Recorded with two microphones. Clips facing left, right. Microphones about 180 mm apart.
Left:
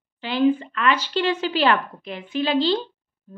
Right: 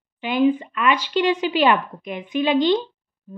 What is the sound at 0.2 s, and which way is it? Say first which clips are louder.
Speech: right 1 dB; 15° right (ahead or behind).